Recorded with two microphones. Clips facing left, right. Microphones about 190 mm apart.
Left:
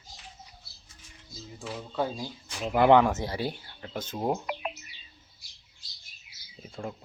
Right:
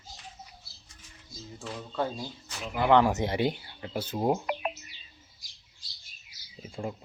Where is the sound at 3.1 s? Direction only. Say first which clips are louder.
Right 4 dB; 20° right (ahead or behind).